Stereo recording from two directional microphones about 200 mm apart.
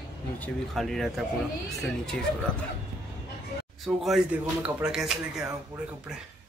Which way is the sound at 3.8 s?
Centre (ahead or behind).